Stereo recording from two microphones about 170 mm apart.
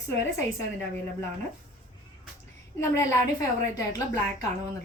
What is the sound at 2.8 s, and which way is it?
Speech, 15° left (ahead or behind).